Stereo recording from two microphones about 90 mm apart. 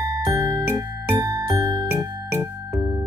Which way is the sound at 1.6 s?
45° right (ahead or behind).